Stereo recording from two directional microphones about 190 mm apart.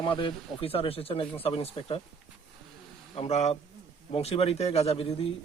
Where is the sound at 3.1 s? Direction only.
35° left (ahead or behind).